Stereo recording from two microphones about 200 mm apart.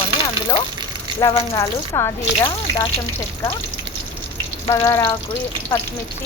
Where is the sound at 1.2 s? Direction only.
15° left (ahead or behind).